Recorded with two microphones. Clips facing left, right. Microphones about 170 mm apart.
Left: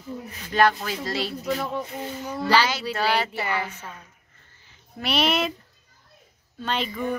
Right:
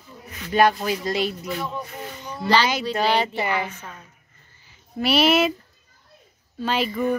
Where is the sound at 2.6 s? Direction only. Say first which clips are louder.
Right 3 dB; 15° right (ahead or behind).